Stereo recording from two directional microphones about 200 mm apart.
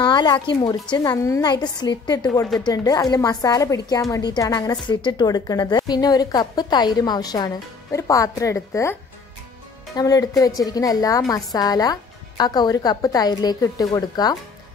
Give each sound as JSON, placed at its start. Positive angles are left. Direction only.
{"t": 0.0, "sound": "a woman's voice", "side_deg": 20}
{"t": 9.9, "sound": "a woman's voice", "side_deg": 20}